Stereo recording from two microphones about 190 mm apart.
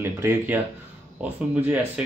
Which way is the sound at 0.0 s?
15° right (ahead or behind).